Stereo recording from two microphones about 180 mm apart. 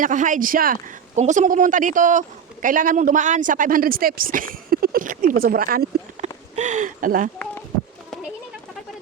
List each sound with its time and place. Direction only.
0.0 s a man's voice: 45° right (ahead or behind)
6.2 s a sound: 40° right (ahead or behind)
6.6 s a man's voice: 40° right (ahead or behind)